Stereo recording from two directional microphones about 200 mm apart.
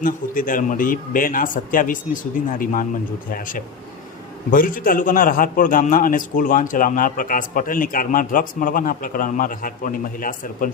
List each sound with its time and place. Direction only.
0.0 s a man's voice: 45° left (ahead or behind)